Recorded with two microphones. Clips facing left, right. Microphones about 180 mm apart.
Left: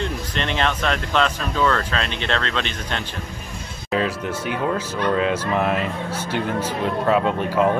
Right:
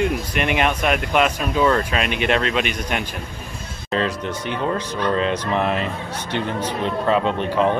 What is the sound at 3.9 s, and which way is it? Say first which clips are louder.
Speech: even; 5° left (ahead or behind).